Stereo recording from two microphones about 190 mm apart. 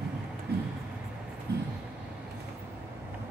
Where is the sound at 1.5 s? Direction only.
60° right (ahead or behind).